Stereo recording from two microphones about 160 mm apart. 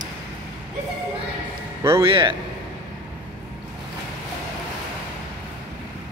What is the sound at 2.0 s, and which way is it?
Speech, 30° right (ahead or behind).